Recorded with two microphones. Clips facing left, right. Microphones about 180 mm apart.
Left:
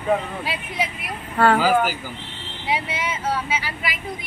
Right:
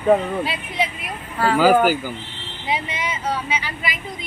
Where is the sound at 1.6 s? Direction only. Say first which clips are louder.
Right 5 dB; 50° right (ahead or behind).